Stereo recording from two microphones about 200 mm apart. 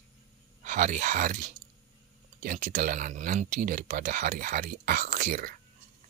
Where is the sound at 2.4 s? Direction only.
40° right (ahead or behind).